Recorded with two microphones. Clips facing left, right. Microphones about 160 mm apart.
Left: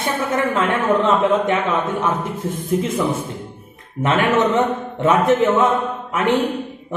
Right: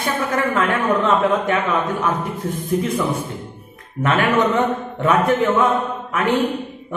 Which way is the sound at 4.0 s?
20° left (ahead or behind).